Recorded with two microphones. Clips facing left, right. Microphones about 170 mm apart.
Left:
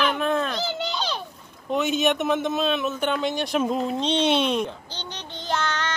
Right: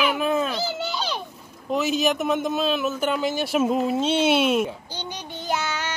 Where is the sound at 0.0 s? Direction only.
5° right (ahead or behind).